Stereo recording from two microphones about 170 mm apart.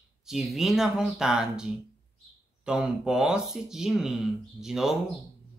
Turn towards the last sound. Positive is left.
turn(degrees=-5)  # may be behind; listen again after turning